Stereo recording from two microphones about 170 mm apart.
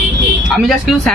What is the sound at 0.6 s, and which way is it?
Speech, centre (ahead or behind).